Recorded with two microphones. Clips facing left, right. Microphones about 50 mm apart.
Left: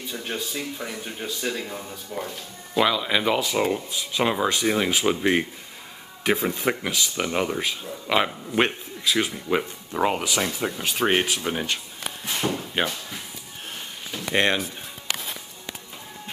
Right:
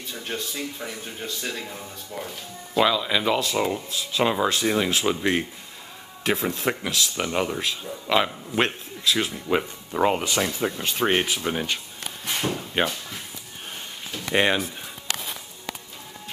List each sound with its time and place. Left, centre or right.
0.1 s speech: centre
14.1 s a sound: centre
14.4 s speech: centre